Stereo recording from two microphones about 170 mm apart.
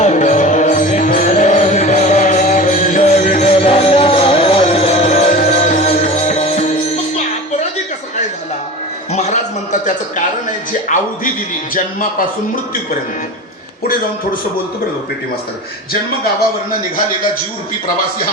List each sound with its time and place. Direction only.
0.0 s music: 45° left (ahead or behind)
9.1 s music: 40° left (ahead or behind)
10.8 s music: 50° left (ahead or behind)